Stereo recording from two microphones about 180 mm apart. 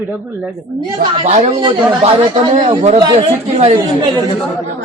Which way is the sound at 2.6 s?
40° right (ahead or behind).